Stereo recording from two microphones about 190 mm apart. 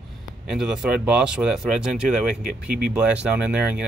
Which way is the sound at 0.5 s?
5° right (ahead or behind).